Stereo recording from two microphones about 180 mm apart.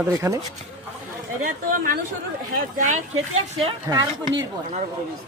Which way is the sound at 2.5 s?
45° right (ahead or behind).